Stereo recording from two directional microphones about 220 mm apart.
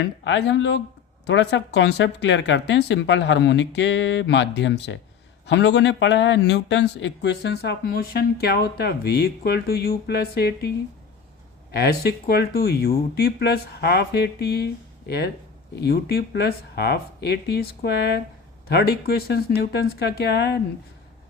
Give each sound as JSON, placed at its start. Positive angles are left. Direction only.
{"t": 0.0, "sound": "speech", "side_deg": 55}
{"t": 11.7, "sound": "speech", "side_deg": 45}